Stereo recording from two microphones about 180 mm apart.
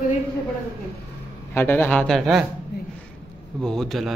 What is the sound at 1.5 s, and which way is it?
Speech, 10° left (ahead or behind).